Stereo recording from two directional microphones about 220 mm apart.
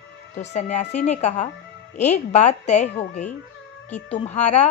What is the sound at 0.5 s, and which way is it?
A woman's voice, 30° left (ahead or behind).